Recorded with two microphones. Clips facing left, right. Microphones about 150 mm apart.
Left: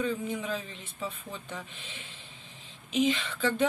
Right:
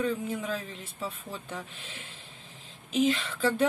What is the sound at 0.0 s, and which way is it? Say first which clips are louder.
Speech: right 1 dB; 5° right (ahead or behind).